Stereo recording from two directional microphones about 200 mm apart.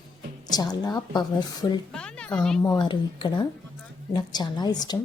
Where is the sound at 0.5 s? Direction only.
20° left (ahead or behind).